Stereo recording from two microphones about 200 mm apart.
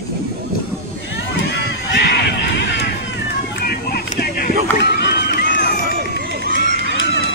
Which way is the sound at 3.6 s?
50° left (ahead or behind).